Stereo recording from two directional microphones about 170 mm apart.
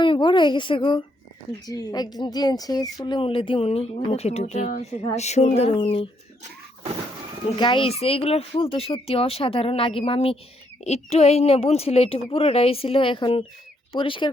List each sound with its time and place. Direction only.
0.0 s speech: 30° left (ahead or behind)
7.5 s speech: 30° left (ahead or behind)